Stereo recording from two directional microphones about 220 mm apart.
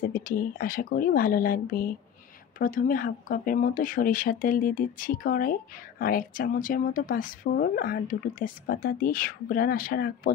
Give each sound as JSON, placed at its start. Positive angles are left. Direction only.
{"t": 0.1, "sound": "speech", "side_deg": 40}